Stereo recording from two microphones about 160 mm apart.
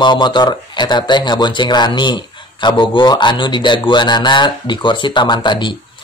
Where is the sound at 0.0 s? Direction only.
30° left (ahead or behind).